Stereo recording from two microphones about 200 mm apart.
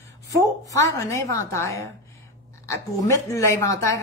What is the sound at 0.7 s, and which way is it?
Speech, 15° left (ahead or behind).